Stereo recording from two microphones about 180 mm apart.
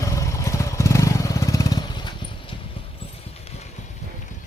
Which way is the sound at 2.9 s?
35° left (ahead or behind).